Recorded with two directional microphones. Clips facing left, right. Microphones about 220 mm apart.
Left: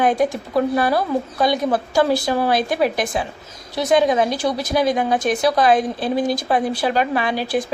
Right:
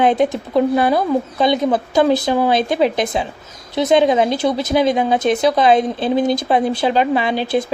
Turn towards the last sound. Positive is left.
turn(degrees=-25)  # may be behind; listen again after turning